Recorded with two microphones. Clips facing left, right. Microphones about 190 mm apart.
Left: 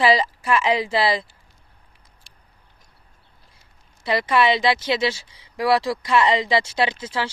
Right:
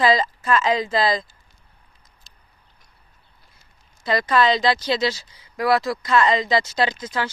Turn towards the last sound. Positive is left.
turn(degrees=10)  # may be behind; listen again after turning